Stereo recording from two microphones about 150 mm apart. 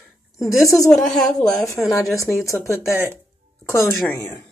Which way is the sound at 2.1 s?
20° left (ahead or behind).